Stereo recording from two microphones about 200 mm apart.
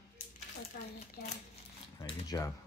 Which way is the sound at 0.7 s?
55° left (ahead or behind).